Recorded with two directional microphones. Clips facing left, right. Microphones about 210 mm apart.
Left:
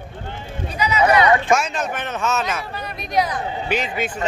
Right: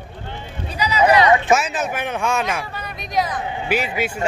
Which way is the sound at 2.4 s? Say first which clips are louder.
Right 1 dB; centre (ahead or behind).